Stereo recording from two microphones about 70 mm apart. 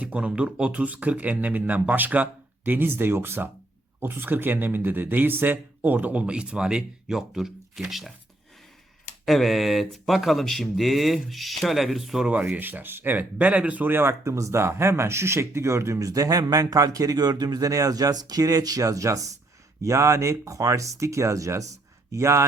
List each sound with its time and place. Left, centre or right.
0.0 s speech: centre
9.2 s speech: centre
12.5 s speech: right